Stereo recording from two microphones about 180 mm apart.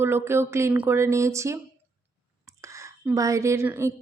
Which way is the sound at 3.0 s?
20° right (ahead or behind).